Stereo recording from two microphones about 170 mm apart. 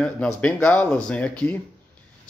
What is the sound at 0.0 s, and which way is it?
A man's voice, 10° left (ahead or behind).